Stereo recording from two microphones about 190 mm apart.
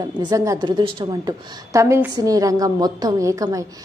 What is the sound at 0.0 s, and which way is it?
A woman's voice, 20° right (ahead or behind).